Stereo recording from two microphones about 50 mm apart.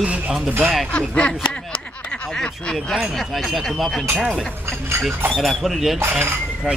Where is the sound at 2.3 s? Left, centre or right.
Centre.